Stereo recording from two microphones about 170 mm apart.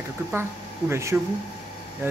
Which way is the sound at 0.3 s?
15° right (ahead or behind).